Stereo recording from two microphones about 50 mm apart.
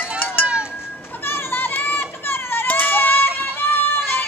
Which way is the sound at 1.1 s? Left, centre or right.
Left.